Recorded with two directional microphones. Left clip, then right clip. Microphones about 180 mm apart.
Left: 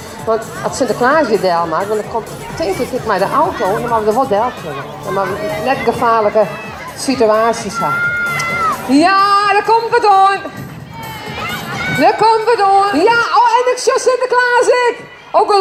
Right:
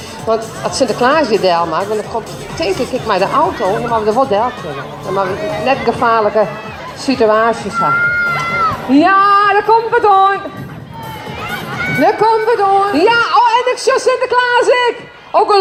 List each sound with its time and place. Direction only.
0.3 s speech: 10° right (ahead or behind); by 10.3 s 25° left (ahead or behind)
11.9 s speech: 30° left (ahead or behind)
13.0 s speech: centre (ahead or behind)